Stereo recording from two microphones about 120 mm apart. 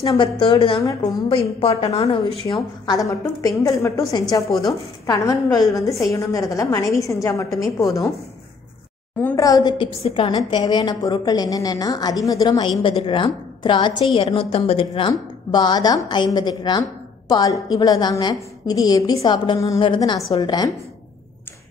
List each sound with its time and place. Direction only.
0.0 s a woman's voice: 45° left (ahead or behind)
0.7 s a woman's voice: 25° left (ahead or behind)
1.3 s a woman's voice: 55° left (ahead or behind)
2.9 s a woman's voice: 30° left (ahead or behind)
9.3 s a woman's voice: 30° left (ahead or behind)
12.8 s a woman's voice: 45° left (ahead or behind)
14.1 s a woman's voice: 50° left (ahead or behind)
15.0 s a woman's voice: 35° left (ahead or behind)